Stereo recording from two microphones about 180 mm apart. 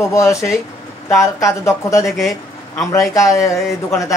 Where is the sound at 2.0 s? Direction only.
Centre (ahead or behind).